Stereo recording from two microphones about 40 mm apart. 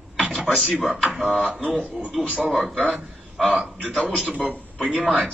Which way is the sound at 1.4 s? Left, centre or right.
Right.